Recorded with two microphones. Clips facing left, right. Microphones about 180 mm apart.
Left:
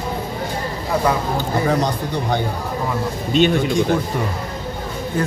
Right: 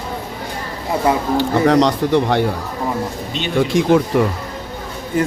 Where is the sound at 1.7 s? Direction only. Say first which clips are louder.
Right 6 dB; 90° right.